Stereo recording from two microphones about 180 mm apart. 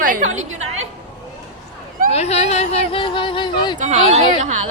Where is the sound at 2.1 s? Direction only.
35° left (ahead or behind).